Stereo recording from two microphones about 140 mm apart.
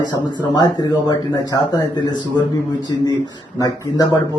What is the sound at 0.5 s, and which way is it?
Speech, 30° left (ahead or behind).